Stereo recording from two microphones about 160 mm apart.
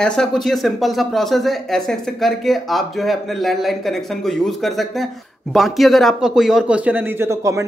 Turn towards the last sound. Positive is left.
turn(degrees=-20)  # may be behind; listen again after turning